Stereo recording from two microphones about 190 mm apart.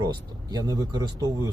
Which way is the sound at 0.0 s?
20° right (ahead or behind).